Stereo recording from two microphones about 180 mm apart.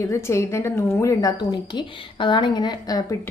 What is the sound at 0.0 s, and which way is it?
A woman's voice, 15° left (ahead or behind).